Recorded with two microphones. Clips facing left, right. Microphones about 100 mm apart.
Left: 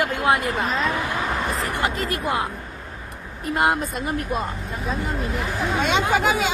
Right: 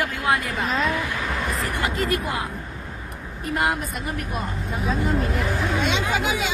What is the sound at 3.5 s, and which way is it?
Speech, 25° left (ahead or behind).